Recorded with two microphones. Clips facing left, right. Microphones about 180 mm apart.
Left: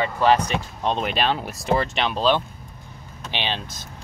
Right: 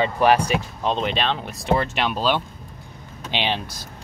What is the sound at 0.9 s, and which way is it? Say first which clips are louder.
Speech: even; 5° left (ahead or behind).